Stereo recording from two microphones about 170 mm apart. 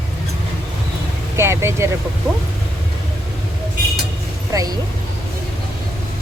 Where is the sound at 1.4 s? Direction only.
15° right (ahead or behind).